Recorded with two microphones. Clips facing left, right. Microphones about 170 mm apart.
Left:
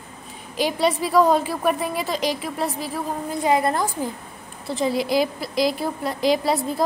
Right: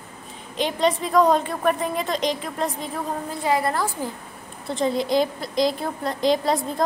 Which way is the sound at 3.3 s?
20° left (ahead or behind).